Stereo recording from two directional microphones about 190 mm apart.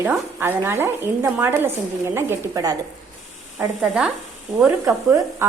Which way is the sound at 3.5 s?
5° right (ahead or behind).